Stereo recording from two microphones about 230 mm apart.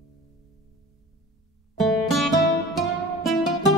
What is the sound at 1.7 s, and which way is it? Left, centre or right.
Music, centre.